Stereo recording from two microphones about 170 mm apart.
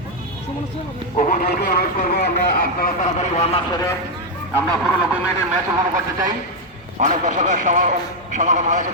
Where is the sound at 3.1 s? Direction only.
40° left (ahead or behind).